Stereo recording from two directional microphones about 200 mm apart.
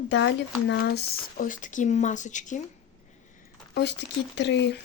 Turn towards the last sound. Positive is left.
turn(degrees=60)  # may be behind; listen again after turning